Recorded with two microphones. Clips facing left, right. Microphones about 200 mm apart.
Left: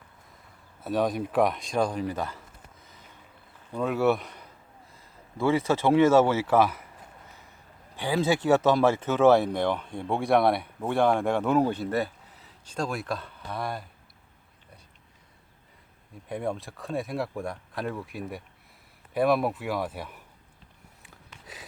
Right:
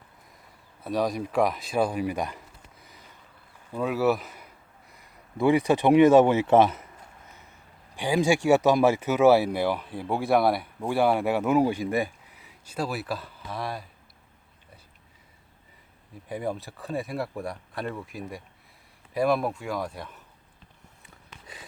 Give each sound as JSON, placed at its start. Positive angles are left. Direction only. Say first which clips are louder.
{"t": 0.8, "sound": "speech", "louder": "even", "side_deg": 0}
{"t": 3.7, "sound": "a man's voice", "louder": "even", "side_deg": -5}
{"t": 4.9, "sound": "speech", "louder": "right 3 dB", "side_deg": -15}
{"t": 7.9, "sound": "speech", "louder": "right 2 dB", "side_deg": -15}
{"t": 16.3, "sound": "speech", "louder": "even", "side_deg": 0}
{"t": 21.0, "sound": "a sound", "louder": "right 1 dB", "side_deg": 0}